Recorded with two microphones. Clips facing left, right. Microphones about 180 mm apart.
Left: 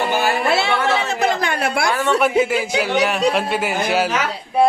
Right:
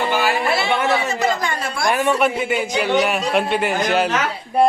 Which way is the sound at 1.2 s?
65° left (ahead or behind).